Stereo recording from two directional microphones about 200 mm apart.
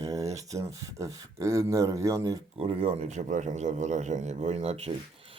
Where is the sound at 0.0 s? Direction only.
15° right (ahead or behind).